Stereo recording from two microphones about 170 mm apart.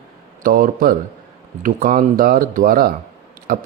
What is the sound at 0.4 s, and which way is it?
Speech, 55° right (ahead or behind).